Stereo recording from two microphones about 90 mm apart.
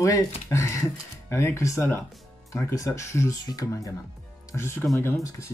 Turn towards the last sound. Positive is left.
turn(degrees=30)  # may be behind; listen again after turning